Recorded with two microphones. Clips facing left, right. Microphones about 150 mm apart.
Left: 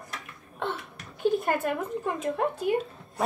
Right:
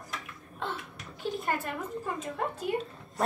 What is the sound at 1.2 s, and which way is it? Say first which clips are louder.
A woman's voice: left 7 dB; 50° left (ahead or behind).